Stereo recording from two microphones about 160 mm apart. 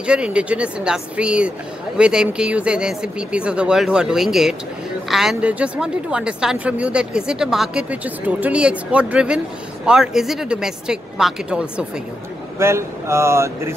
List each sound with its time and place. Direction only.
0.0 s a woman's voice: 5° right (ahead or behind)
12.5 s a woman's voice: 15° right (ahead or behind)